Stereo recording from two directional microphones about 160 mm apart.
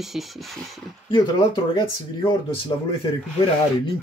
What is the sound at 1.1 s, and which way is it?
Speech, 30° left (ahead or behind).